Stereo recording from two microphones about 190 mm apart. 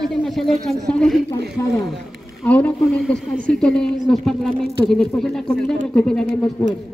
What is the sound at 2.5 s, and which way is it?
A woman's voice, 5° left (ahead or behind).